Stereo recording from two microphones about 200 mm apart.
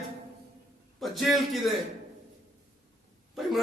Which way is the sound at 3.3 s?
Centre (ahead or behind).